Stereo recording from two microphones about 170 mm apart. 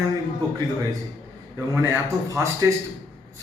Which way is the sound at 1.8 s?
15° right (ahead or behind).